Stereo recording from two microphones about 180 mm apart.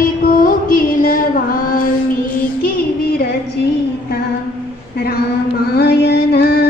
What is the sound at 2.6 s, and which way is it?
Child singing, 55° left (ahead or behind).